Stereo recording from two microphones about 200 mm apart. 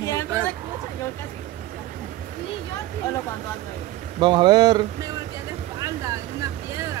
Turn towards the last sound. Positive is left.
turn(degrees=-15)  # may be behind; listen again after turning